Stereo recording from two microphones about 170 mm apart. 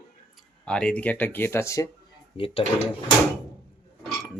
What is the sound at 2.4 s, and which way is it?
Speech, 35° left (ahead or behind).